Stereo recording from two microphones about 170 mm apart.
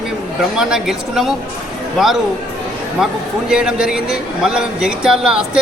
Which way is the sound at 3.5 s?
5° right (ahead or behind).